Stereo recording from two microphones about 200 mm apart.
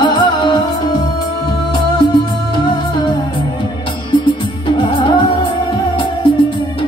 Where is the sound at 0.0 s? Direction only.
20° left (ahead or behind).